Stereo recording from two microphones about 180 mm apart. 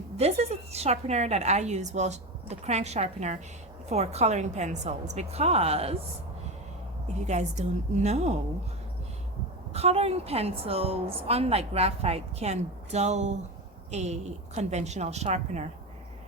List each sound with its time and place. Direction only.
0.2 s a woman's voice: 35° right (ahead or behind)
7.3 s a woman's voice: 40° right (ahead or behind)
9.7 s a woman's voice: 35° right (ahead or behind)